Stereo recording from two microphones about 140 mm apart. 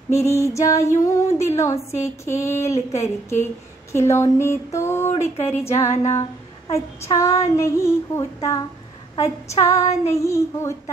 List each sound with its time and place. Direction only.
0.1 s female singing: 20° left (ahead or behind)